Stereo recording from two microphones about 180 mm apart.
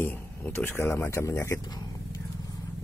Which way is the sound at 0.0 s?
10° left (ahead or behind).